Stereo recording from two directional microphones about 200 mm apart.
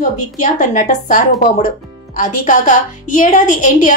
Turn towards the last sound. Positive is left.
turn(degrees=40)  # may be behind; listen again after turning